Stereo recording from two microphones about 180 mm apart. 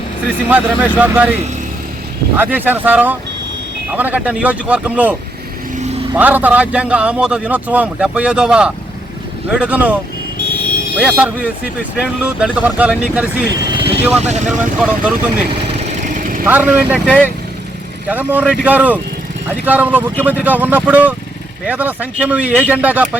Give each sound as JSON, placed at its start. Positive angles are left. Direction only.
{"t": 0.4, "sound": "a man's voice", "side_deg": -10}
{"t": 6.1, "sound": "a man's voice", "side_deg": -10}
{"t": 13.7, "sound": "vehicle", "side_deg": -30}
{"t": 14.2, "sound": "speech", "side_deg": -40}
{"t": 14.8, "sound": "speech", "side_deg": -5}
{"t": 15.4, "sound": "vehicle", "side_deg": -35}
{"t": 16.5, "sound": "a man's voice", "side_deg": -10}
{"t": 17.1, "sound": "speech", "side_deg": 10}
{"t": 18.1, "sound": "a man's voice", "side_deg": -10}